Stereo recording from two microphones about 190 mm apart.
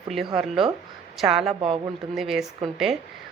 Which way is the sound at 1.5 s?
30° right (ahead or behind).